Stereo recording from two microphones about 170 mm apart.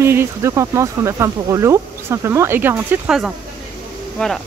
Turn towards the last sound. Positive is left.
turn(degrees=5)  # may be behind; listen again after turning